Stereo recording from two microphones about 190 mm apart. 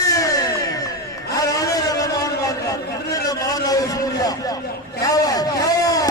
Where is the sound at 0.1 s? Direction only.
20° left (ahead or behind).